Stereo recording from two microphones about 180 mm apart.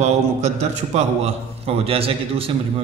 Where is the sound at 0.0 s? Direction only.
40° right (ahead or behind).